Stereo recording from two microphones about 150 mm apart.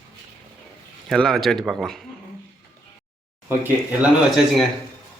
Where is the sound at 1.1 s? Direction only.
Centre (ahead or behind).